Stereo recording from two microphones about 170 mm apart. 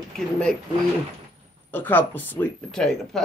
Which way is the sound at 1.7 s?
10° left (ahead or behind).